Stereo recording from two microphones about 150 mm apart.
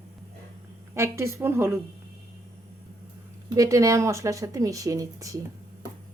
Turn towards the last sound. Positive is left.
turn(degrees=-20)  # may be behind; listen again after turning